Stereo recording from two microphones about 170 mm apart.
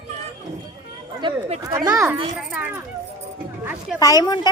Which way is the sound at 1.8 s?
20° right (ahead or behind).